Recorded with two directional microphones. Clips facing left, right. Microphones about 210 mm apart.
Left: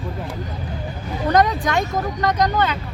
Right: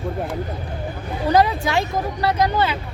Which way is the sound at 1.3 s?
5° right (ahead or behind).